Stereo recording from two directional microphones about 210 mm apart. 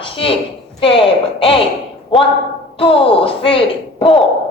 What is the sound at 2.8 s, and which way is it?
Speech, 25° left (ahead or behind).